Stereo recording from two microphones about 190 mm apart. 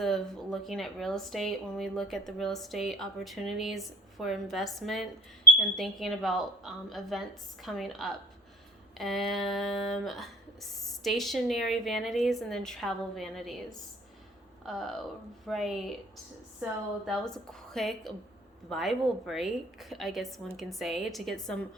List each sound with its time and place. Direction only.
0.0 s speech: centre (ahead or behind)